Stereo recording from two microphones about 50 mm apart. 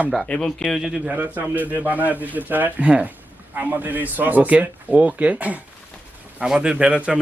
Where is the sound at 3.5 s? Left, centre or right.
Right.